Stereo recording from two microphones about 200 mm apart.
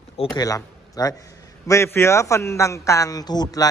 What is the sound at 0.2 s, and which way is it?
A man's voice, 20° left (ahead or behind).